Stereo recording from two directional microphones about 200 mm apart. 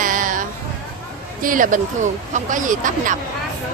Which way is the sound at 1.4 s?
40° right (ahead or behind).